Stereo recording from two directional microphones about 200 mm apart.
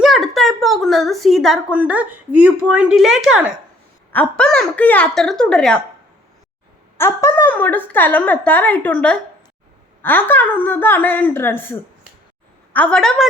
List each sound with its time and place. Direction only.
0.0 s speech: centre (ahead or behind)
4.1 s a woman's voice: 5° left (ahead or behind)
6.9 s a woman's voice: 10° left (ahead or behind)